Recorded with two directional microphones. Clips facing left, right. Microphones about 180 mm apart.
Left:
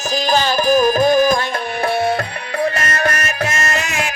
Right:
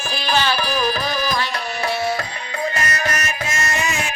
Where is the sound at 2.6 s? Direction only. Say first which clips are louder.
Left 5 dB; 55° left (ahead or behind).